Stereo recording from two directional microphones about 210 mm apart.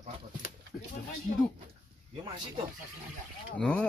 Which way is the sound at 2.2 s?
20° right (ahead or behind).